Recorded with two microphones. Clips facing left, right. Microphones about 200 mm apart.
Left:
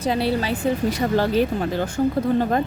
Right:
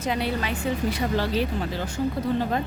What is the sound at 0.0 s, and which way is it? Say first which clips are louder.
A woman's voice: left 5 dB; 35° left (ahead or behind).